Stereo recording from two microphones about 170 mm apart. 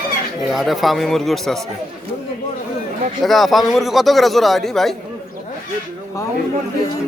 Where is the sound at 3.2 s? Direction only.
Centre (ahead or behind).